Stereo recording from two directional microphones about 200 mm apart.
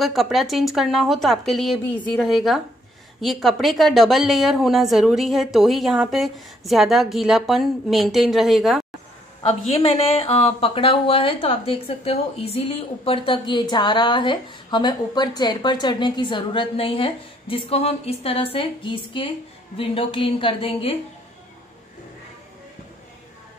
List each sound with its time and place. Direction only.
0.0 s a woman's voice: centre (ahead or behind)
9.7 s speech: 30° left (ahead or behind)